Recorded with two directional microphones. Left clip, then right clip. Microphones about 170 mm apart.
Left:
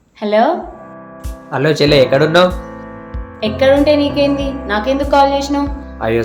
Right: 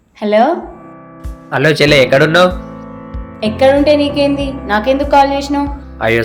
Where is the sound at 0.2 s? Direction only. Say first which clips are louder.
Right 2 dB; 15° right (ahead or behind).